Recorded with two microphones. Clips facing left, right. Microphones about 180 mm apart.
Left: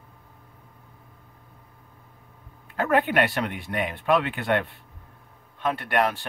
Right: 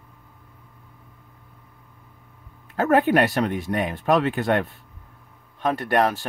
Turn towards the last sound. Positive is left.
turn(degrees=-40)  # may be behind; listen again after turning